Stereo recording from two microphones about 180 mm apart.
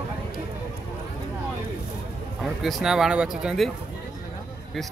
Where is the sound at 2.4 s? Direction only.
Centre (ahead or behind).